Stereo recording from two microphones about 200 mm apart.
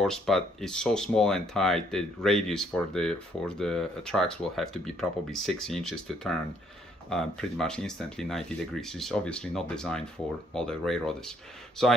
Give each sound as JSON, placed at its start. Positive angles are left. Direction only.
{"t": 0.0, "sound": "speech", "side_deg": 0}